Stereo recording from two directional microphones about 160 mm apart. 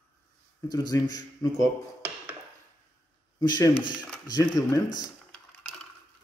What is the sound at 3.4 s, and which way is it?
A man's voice, 25° left (ahead or behind).